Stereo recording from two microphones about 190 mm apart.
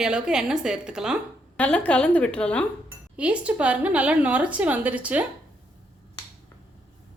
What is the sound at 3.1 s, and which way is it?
A woman's voice, 5° right (ahead or behind).